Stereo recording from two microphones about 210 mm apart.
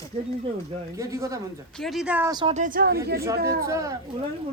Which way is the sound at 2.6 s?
40° right (ahead or behind).